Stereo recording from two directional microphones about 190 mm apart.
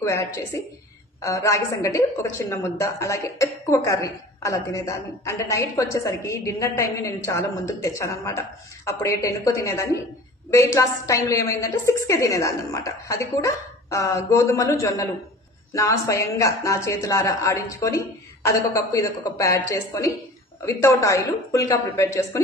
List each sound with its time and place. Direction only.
0.0 s a woman's voice: 15° left (ahead or behind)